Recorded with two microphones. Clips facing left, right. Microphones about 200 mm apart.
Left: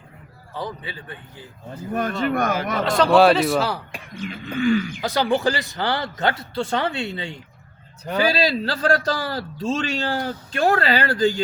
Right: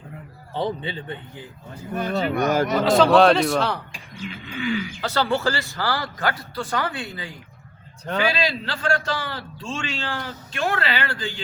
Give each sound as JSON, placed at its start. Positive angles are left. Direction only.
{"t": 0.5, "sound": "speech", "side_deg": -25}
{"t": 1.9, "sound": "roaring cats", "side_deg": 50}
{"t": 2.8, "sound": "a man's voice", "side_deg": 0}
{"t": 4.3, "sound": "roaring cats", "side_deg": 45}
{"t": 4.9, "sound": "speech", "side_deg": 15}
{"t": 8.2, "sound": "a man's voice", "side_deg": 35}